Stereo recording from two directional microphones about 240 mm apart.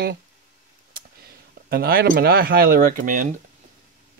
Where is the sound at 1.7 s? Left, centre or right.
Right.